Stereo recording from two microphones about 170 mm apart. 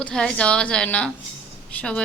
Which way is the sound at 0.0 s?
5° left (ahead or behind).